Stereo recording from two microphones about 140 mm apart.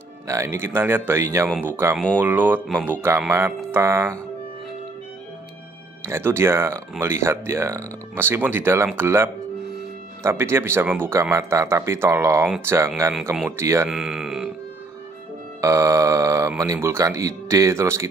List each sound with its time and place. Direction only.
0.3 s speech: 20° right (ahead or behind)
6.0 s speech: 20° right (ahead or behind)
13.2 s speech: 5° right (ahead or behind)
13.6 s speech: 20° right (ahead or behind)
13.8 s speech: 5° right (ahead or behind)
15.6 s speech: 25° right (ahead or behind)